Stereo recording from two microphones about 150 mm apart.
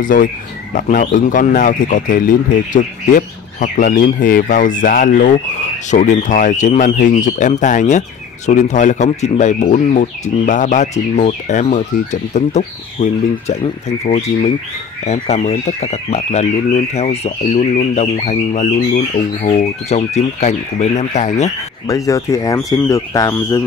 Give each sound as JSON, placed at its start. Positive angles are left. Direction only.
{"t": 0.0, "sound": "speech", "side_deg": 65}
{"t": 21.8, "sound": "speech", "side_deg": 20}